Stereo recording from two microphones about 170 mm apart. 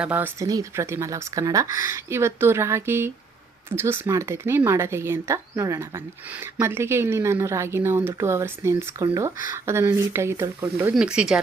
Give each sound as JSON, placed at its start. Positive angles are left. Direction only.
{"t": 0.0, "sound": "speech", "side_deg": -10}